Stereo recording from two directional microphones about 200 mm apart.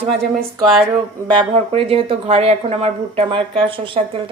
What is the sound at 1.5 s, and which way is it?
Speech, 30° right (ahead or behind).